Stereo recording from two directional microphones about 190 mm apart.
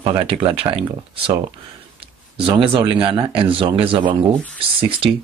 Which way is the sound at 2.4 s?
30° right (ahead or behind).